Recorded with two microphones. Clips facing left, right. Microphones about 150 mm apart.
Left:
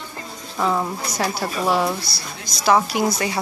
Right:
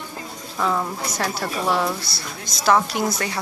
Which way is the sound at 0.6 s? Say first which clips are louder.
Left 2 dB; 10° left (ahead or behind).